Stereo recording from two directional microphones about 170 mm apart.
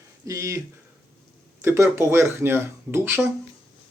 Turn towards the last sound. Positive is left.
turn(degrees=-15)  # may be behind; listen again after turning